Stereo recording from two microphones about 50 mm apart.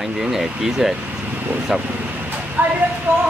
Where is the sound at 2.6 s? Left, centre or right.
Right.